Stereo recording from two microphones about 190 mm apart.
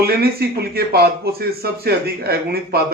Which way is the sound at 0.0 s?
55° right (ahead or behind).